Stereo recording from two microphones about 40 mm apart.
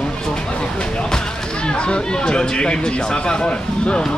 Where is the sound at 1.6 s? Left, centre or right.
Left.